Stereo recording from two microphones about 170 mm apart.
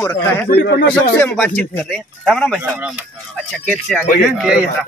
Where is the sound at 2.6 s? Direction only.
10° right (ahead or behind).